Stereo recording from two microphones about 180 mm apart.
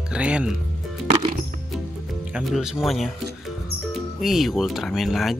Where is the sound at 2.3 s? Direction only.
5° right (ahead or behind).